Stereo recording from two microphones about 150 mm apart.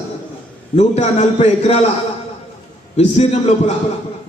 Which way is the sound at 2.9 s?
45° left (ahead or behind).